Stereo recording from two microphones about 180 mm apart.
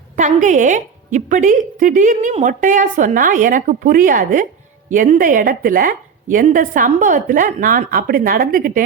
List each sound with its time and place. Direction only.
0.2 s a woman's voice: 45° right (ahead or behind)